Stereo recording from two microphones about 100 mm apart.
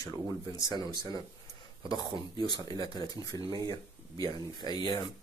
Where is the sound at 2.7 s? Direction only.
40° left (ahead or behind).